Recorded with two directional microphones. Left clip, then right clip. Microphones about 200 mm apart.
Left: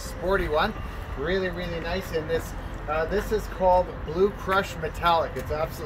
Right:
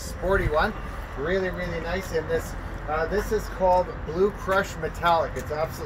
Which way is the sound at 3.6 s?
10° right (ahead or behind).